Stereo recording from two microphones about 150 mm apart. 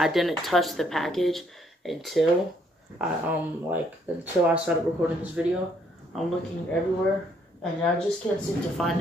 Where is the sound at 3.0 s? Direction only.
10° right (ahead or behind).